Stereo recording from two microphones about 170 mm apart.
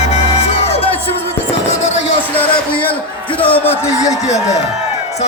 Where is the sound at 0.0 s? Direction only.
40° left (ahead or behind).